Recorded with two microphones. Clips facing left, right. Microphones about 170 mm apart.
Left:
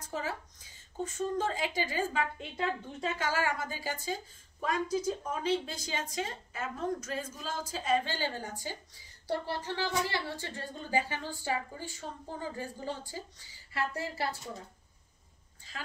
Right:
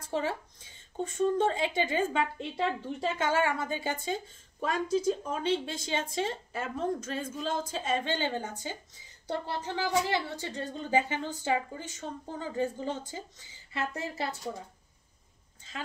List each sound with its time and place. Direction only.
0.0 s speech: 30° right (ahead or behind)